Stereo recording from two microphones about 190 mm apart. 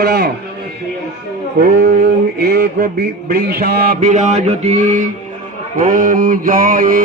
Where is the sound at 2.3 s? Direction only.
55° right (ahead or behind).